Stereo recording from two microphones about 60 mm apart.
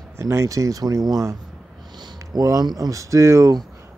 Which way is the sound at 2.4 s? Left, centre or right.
Right.